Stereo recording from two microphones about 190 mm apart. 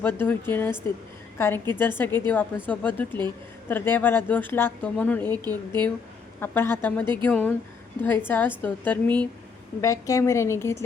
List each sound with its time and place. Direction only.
0.0 s a woman's voice: 10° left (ahead or behind)
5.4 s speech: 20° right (ahead or behind)
6.4 s a woman's voice: 10° left (ahead or behind)